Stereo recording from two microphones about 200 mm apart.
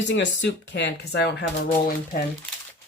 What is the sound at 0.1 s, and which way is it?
Speech, 60° left (ahead or behind).